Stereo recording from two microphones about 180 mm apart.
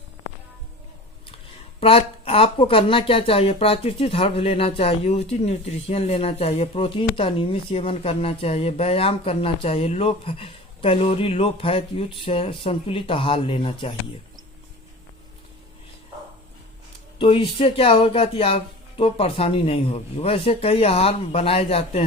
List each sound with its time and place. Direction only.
1.8 s speech: 30° left (ahead or behind)
17.2 s speech: 30° left (ahead or behind)